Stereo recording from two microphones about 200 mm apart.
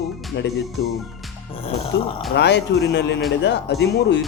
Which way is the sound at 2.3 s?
60° left (ahead or behind).